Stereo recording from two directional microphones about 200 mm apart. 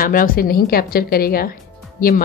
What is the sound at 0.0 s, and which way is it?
A woman's voice, 45° left (ahead or behind).